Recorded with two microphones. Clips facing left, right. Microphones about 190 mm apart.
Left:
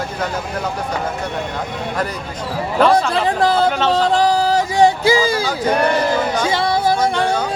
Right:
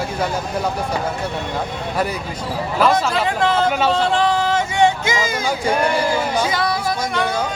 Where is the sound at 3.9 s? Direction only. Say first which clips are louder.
Left 2 dB; 35° left (ahead or behind).